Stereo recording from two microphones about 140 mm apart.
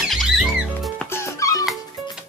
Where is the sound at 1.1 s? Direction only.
20° left (ahead or behind).